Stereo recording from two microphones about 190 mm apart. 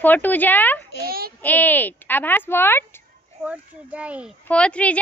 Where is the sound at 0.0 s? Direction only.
10° left (ahead or behind).